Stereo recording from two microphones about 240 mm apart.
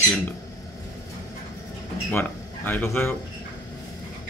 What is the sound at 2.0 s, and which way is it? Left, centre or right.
Speech, centre.